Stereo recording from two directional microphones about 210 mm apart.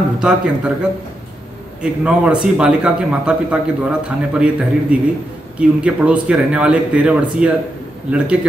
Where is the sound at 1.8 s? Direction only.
5° right (ahead or behind).